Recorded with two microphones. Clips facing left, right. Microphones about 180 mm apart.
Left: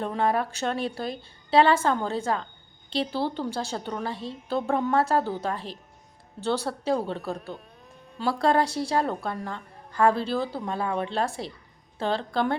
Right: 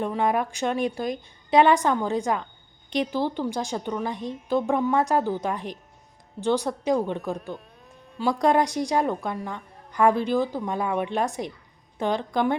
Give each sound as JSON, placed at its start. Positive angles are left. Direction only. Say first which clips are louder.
{"t": 0.0, "sound": "a woman's voice", "louder": "right 1 dB", "side_deg": -15}
{"t": 8.3, "sound": "a woman's voice", "louder": "right 2 dB", "side_deg": -15}